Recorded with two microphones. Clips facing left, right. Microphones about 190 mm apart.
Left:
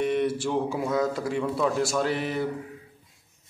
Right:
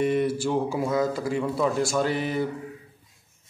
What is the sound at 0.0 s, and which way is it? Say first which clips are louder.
Speech: right 2 dB; centre (ahead or behind).